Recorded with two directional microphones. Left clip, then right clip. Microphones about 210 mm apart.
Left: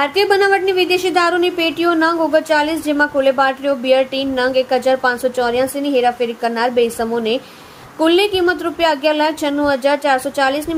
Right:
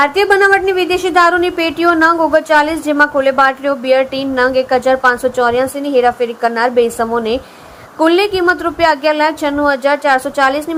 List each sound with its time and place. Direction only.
0.0 s speech: 10° right (ahead or behind)